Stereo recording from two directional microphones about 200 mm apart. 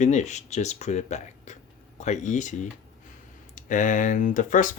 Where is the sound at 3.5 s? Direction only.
40° left (ahead or behind).